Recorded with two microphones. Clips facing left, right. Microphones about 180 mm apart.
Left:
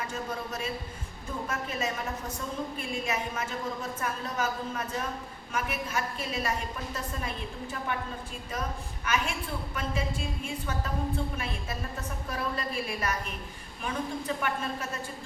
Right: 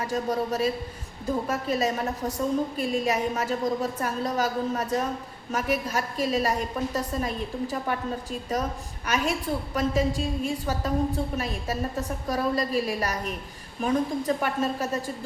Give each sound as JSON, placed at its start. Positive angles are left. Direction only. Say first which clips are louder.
{"t": 0.0, "sound": "a woman's voice", "louder": "right 8 dB", "side_deg": -35}
{"t": 9.0, "sound": "a woman's voice", "louder": "right 5 dB", "side_deg": -40}